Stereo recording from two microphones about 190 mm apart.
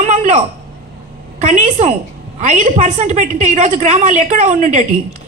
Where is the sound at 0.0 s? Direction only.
40° right (ahead or behind).